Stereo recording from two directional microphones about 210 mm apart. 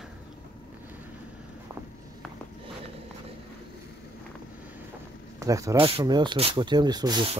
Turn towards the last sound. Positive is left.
turn(degrees=-20)  # may be behind; listen again after turning